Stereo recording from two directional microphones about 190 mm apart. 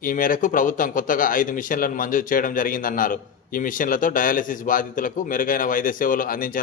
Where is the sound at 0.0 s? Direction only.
45° left (ahead or behind).